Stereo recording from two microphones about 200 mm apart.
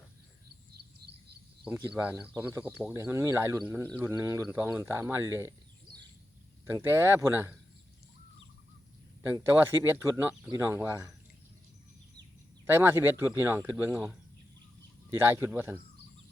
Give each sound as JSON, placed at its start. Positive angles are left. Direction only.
{"t": 1.6, "sound": "a man's voice", "side_deg": -5}
{"t": 6.7, "sound": "a man's voice", "side_deg": -10}
{"t": 9.9, "sound": "a man's voice", "side_deg": -10}
{"t": 12.7, "sound": "a man's voice", "side_deg": -10}